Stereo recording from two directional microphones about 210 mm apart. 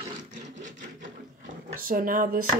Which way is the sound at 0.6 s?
35° right (ahead or behind).